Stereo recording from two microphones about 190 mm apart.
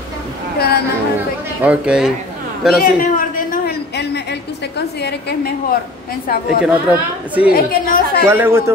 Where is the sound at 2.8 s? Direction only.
45° left (ahead or behind).